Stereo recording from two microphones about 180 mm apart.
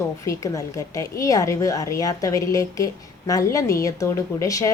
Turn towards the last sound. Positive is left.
turn(degrees=20)  # may be behind; listen again after turning